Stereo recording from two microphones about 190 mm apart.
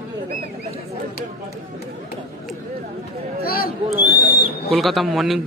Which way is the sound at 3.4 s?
50° left (ahead or behind).